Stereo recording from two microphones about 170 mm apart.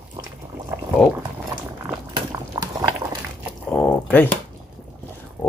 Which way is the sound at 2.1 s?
25° right (ahead or behind).